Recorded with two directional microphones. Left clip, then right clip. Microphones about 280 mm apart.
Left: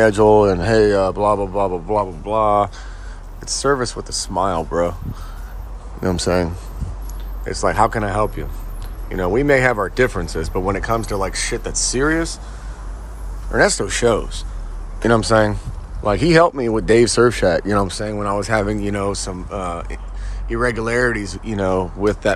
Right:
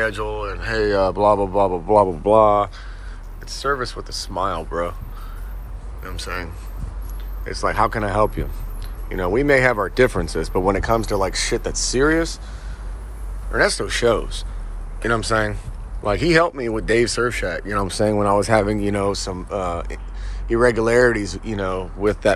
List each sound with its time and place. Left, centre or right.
0.0 s speech: left
3.4 s speech: left
6.0 s speech: left
13.5 s speech: centre
17.8 s speech: centre